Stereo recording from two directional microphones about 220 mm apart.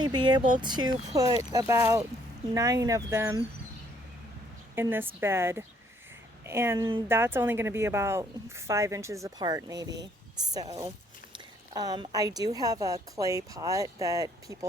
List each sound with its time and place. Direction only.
0.2 s a woman's voice: 20° right (ahead or behind)
4.7 s a woman's voice: 10° right (ahead or behind)